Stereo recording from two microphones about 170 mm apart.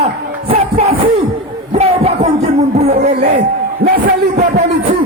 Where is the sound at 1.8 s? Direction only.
40° right (ahead or behind).